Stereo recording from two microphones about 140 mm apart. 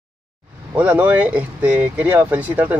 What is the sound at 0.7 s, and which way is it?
Speech, 10° right (ahead or behind).